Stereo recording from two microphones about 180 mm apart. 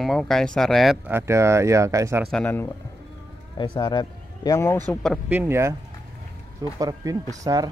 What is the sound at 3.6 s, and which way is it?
Speech, 25° left (ahead or behind).